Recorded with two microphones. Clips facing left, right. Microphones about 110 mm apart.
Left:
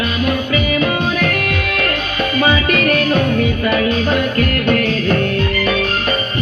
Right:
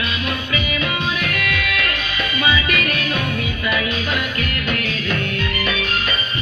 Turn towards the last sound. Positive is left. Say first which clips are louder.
# left 7 dB
turn(degrees=40)  # may be behind; listen again after turning